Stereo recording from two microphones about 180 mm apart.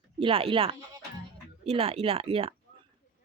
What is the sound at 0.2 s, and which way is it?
Speech, 30° right (ahead or behind).